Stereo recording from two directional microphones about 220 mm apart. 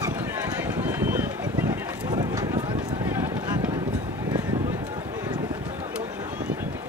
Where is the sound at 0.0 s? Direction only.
10° right (ahead or behind).